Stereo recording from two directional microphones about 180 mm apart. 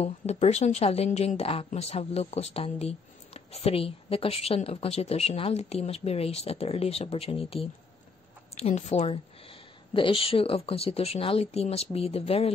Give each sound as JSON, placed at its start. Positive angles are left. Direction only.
{"t": 0.0, "sound": "a woman's voice", "side_deg": 35}